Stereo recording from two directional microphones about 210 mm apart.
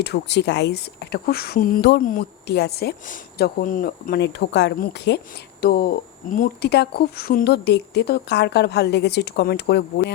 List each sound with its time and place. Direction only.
0.0 s speech: 55° left (ahead or behind)